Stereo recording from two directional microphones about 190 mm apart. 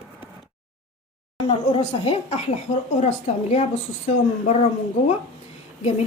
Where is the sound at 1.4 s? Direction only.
30° left (ahead or behind).